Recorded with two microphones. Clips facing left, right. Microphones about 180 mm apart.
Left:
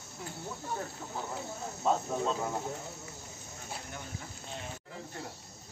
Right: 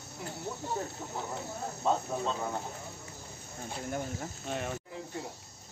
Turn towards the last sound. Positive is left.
turn(degrees=-60)  # may be behind; listen again after turning